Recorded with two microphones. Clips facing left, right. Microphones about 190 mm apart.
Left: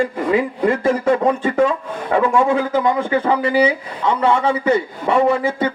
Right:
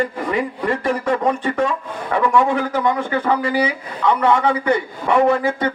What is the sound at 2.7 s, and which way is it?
A man's voice, 25° left (ahead or behind).